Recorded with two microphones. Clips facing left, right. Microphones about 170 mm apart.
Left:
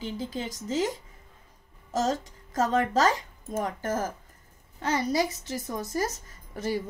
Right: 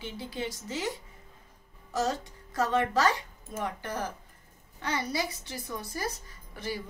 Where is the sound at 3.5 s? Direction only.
45° left (ahead or behind).